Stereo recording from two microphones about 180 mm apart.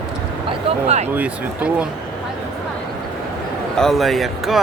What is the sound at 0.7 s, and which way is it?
Speech, 35° right (ahead or behind).